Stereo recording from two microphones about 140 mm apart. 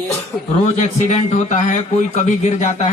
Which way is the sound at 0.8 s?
55° left (ahead or behind).